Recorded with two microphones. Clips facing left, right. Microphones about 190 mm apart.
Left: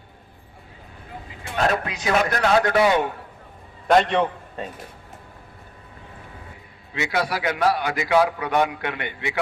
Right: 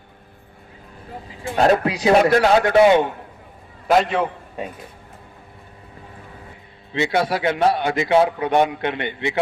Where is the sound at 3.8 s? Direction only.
5° right (ahead or behind).